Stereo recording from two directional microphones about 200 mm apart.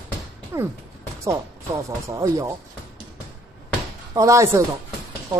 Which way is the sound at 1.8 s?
15° right (ahead or behind).